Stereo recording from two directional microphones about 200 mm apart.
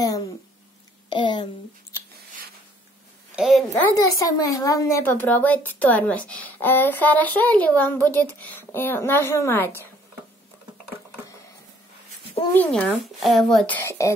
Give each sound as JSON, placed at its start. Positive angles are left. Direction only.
{"t": 1.1, "sound": "speech", "side_deg": 25}
{"t": 3.3, "sound": "a woman's voice", "side_deg": 0}
{"t": 3.9, "sound": "speech", "side_deg": 15}
{"t": 12.5, "sound": "speech", "side_deg": 5}
{"t": 13.8, "sound": "speech", "side_deg": 15}